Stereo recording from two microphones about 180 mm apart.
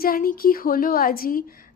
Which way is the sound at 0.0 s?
55° left (ahead or behind).